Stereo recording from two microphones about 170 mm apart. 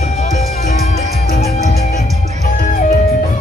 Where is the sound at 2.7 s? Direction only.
50° left (ahead or behind).